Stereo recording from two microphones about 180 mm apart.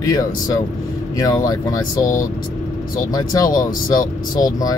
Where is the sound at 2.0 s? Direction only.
50° left (ahead or behind).